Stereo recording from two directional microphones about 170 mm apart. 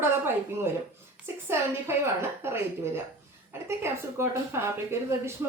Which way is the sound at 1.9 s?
15° right (ahead or behind).